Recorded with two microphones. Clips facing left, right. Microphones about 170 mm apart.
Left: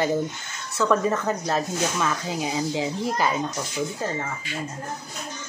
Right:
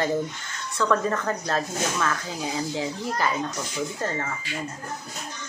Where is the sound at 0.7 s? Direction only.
15° left (ahead or behind).